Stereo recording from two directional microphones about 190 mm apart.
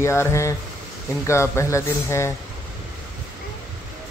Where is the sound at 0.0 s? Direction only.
15° left (ahead or behind).